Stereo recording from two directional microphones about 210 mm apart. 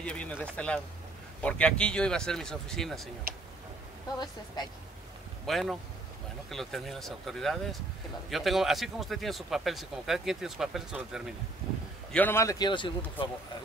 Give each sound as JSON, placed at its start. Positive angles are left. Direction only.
{"t": 0.0, "sound": "speech", "side_deg": 5}
{"t": 5.5, "sound": "speech", "side_deg": 0}
{"t": 12.1, "sound": "a man's voice", "side_deg": 10}